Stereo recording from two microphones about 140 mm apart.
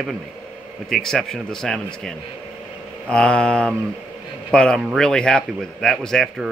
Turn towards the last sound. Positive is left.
turn(degrees=5)  # may be behind; listen again after turning